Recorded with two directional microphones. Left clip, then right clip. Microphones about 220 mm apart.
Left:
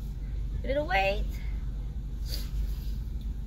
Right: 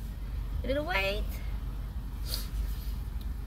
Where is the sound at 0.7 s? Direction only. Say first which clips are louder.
Left 3 dB; 20° right (ahead or behind).